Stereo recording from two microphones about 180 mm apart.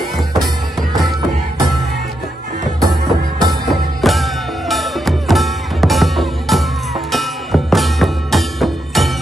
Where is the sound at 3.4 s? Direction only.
Centre (ahead or behind).